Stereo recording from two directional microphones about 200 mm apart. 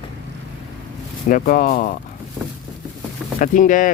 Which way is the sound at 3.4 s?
40° left (ahead or behind).